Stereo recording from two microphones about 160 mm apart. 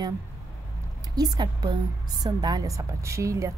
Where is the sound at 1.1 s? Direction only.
25° right (ahead or behind).